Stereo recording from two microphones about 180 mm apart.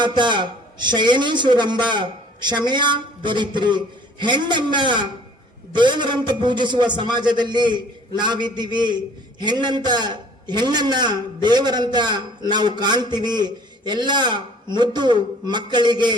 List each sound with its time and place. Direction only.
0.0 s a man's voice: 25° right (ahead or behind)